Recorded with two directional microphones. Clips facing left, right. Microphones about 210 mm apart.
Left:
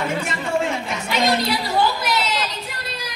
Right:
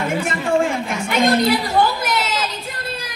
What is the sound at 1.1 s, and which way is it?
Chatter, 50° right (ahead or behind).